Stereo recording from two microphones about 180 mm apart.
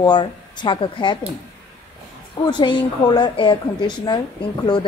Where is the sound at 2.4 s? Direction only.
25° left (ahead or behind).